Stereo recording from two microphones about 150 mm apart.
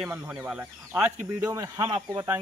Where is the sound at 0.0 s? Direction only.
10° right (ahead or behind).